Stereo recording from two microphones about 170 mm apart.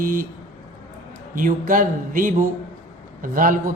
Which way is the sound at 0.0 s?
55° right (ahead or behind).